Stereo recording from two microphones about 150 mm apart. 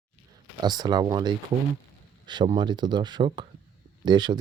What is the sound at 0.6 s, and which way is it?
Speech, 25° right (ahead or behind).